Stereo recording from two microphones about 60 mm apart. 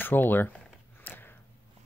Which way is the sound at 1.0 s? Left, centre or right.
Left.